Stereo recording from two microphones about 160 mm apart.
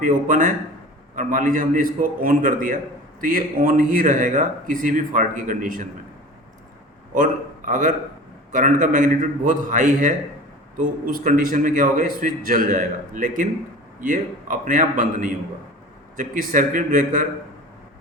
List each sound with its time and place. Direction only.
0.0 s a man's voice: 60° right (ahead or behind)
7.1 s a man's voice: 55° right (ahead or behind)